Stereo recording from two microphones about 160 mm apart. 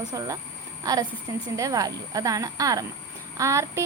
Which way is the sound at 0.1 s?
20° right (ahead or behind).